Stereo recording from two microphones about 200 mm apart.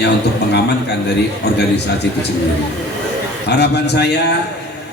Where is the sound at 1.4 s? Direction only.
60° left (ahead or behind).